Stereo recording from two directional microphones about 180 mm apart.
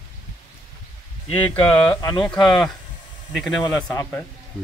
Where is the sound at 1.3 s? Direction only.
10° left (ahead or behind).